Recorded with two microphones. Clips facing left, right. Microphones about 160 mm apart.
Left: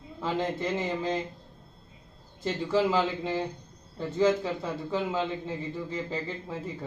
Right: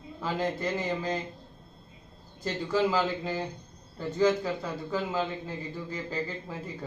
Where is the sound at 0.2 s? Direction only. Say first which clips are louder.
Left 1 dB; 25° left (ahead or behind).